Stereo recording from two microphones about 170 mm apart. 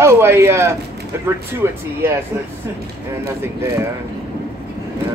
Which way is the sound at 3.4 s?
15° right (ahead or behind).